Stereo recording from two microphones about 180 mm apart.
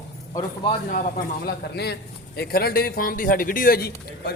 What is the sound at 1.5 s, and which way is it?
A man's voice, 65° left (ahead or behind).